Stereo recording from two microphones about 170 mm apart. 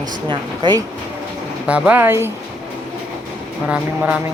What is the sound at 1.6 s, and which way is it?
Speech, 10° right (ahead or behind).